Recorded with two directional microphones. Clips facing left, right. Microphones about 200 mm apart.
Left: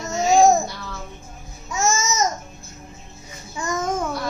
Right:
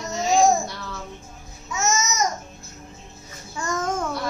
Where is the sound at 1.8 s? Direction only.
30° left (ahead or behind).